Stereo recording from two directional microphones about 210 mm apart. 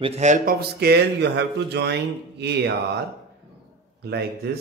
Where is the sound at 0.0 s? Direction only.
30° right (ahead or behind).